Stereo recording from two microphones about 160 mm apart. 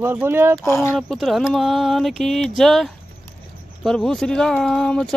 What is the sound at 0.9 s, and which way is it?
Speech, centre (ahead or behind).